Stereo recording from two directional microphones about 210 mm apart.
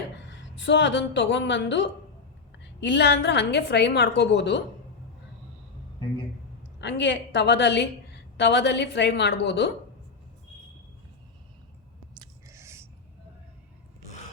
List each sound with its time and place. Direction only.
0.3 s a woman's voice: 60° left (ahead or behind)
6.7 s a woman's voice: 55° left (ahead or behind)
12.2 s a sound: 15° right (ahead or behind)